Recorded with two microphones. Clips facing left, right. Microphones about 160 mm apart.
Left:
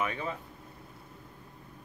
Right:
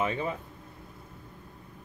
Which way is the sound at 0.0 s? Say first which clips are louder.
Right 4 dB; 20° right (ahead or behind).